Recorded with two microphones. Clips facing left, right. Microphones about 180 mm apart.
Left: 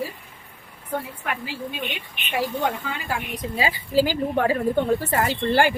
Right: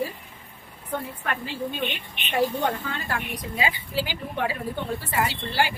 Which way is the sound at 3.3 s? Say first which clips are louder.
Left 4 dB; 35° left (ahead or behind).